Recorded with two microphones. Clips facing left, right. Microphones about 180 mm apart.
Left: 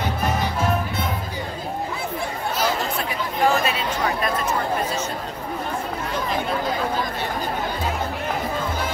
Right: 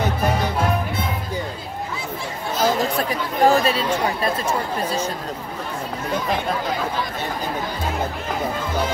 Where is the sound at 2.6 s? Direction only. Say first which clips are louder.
Right 6 dB; 35° right (ahead or behind).